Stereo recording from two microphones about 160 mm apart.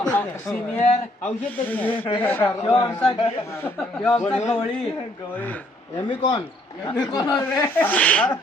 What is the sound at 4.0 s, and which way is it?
Speech, 10° left (ahead or behind).